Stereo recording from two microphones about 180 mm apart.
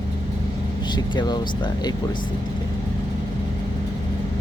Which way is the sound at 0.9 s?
25° left (ahead or behind).